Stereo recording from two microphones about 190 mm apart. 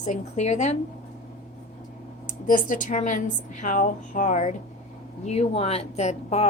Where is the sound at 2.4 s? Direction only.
45° left (ahead or behind).